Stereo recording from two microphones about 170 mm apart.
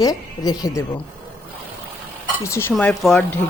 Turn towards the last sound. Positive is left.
turn(degrees=5)  # may be behind; listen again after turning